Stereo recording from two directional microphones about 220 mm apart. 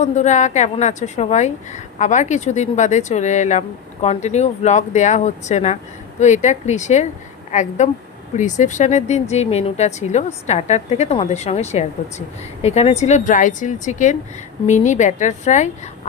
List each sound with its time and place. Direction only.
0.0 s a woman's voice: 35° left (ahead or behind)